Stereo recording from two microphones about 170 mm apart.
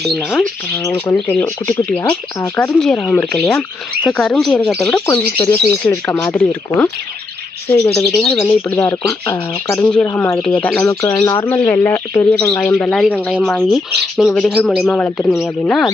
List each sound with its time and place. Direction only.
0.8 s speech: 15° left (ahead or behind)
8.2 s speech: centre (ahead or behind)
8.4 s speech: 10° left (ahead or behind)
12.3 s speech: 5° left (ahead or behind)